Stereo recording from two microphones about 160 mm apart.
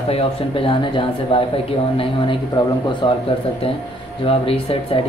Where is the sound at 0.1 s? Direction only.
35° left (ahead or behind).